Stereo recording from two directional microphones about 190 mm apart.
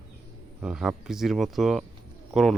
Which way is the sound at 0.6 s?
5° right (ahead or behind).